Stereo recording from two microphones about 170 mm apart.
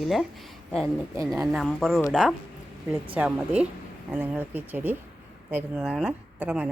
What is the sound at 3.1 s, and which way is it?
A woman's voice, 5° right (ahead or behind).